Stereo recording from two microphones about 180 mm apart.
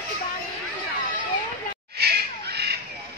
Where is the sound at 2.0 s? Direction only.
65° right (ahead or behind).